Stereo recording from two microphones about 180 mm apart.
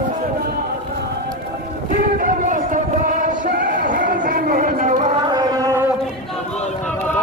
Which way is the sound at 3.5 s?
50° right (ahead or behind).